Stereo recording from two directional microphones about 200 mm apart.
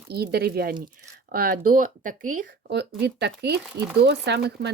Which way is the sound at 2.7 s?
55° right (ahead or behind).